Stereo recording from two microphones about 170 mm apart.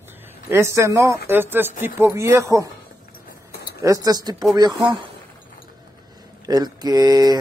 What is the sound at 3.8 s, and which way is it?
Speech, 20° right (ahead or behind).